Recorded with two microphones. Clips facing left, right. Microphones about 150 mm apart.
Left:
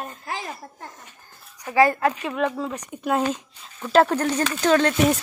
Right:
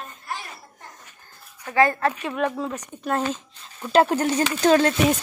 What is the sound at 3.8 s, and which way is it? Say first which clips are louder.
Speech: even; 5° right (ahead or behind).